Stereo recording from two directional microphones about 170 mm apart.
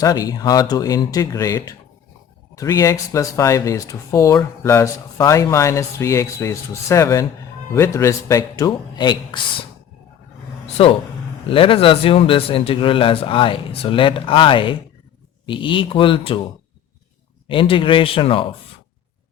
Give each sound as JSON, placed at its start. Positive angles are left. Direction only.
{"t": 0.0, "sound": "speech", "side_deg": 20}
{"t": 10.8, "sound": "a man's voice", "side_deg": 35}
{"t": 17.5, "sound": "a man's voice", "side_deg": 30}